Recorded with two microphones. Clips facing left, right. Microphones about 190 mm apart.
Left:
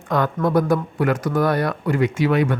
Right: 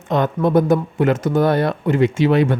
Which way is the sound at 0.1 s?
20° right (ahead or behind).